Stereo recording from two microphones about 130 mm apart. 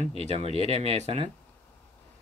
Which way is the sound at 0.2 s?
60° right (ahead or behind).